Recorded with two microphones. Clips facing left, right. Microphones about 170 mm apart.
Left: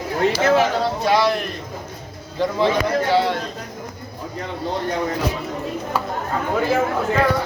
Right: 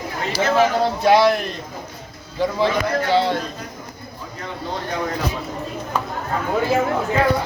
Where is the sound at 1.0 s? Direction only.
60° right (ahead or behind).